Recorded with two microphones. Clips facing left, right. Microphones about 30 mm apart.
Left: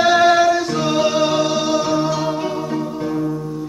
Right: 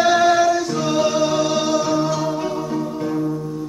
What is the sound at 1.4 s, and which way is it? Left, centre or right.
Music, centre.